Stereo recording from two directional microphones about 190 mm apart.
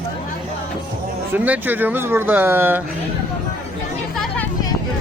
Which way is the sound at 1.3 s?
10° right (ahead or behind).